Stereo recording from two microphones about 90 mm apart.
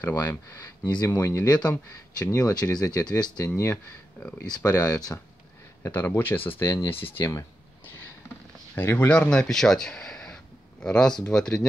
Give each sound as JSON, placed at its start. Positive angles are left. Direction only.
{"t": 0.0, "sound": "speech", "side_deg": 20}
{"t": 1.4, "sound": "speech", "side_deg": 10}
{"t": 5.8, "sound": "speech", "side_deg": 25}
{"t": 8.7, "sound": "speech", "side_deg": 20}
{"t": 9.1, "sound": "speech", "side_deg": 10}